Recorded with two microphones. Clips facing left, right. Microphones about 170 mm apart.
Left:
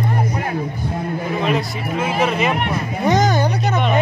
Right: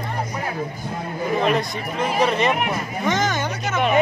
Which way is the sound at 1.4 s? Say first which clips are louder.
Left 1 dB; centre (ahead or behind).